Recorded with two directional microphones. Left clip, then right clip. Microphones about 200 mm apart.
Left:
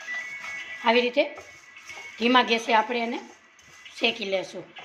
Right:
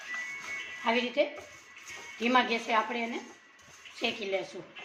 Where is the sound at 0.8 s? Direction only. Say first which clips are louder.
Left 7 dB; 60° left (ahead or behind).